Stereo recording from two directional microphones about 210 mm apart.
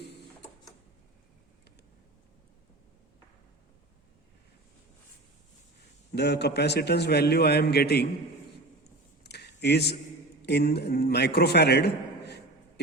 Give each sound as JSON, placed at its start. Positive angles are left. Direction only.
{"t": 6.1, "sound": "a man's voice", "side_deg": 55}
{"t": 9.2, "sound": "a sound", "side_deg": 50}
{"t": 10.4, "sound": "a man's voice", "side_deg": 50}